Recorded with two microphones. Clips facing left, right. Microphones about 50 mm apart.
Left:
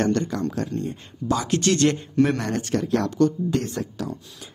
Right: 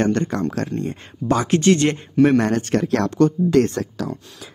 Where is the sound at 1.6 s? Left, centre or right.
Right.